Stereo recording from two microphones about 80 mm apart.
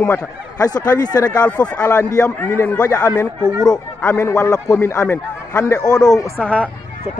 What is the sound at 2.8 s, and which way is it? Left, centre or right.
Speech, left.